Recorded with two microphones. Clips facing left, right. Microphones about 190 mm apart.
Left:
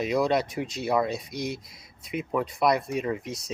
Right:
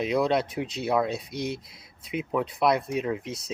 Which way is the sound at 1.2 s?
60° right (ahead or behind).